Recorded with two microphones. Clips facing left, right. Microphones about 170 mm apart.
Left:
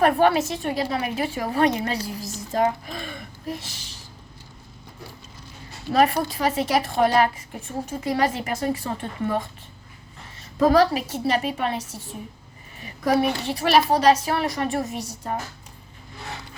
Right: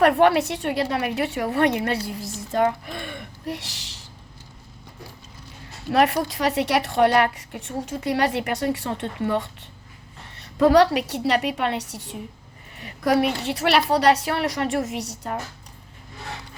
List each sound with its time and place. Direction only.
0.0 s a woman's voice: 75° right (ahead or behind)
5.9 s a woman's voice: 75° right (ahead or behind)